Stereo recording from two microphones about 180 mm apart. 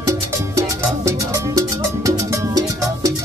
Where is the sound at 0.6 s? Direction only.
15° right (ahead or behind).